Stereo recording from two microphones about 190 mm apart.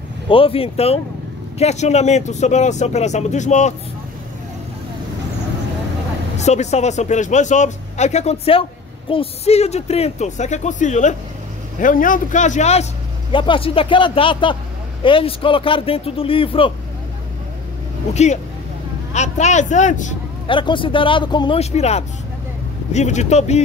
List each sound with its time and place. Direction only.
0.3 s speech: 30° left (ahead or behind)
6.3 s speech: 35° left (ahead or behind)
13.3 s speech: 25° left (ahead or behind)
18.1 s speech: 35° left (ahead or behind)
20.4 s speech: 25° left (ahead or behind)